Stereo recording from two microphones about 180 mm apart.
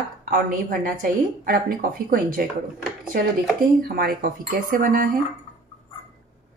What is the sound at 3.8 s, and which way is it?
A woman's voice, 55° right (ahead or behind).